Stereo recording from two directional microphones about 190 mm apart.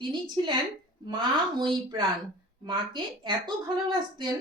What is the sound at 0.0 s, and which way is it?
Speech, 25° right (ahead or behind).